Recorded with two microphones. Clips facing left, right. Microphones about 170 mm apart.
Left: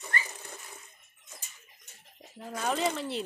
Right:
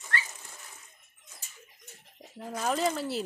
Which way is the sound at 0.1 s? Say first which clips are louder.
Right 1 dB; 80° right.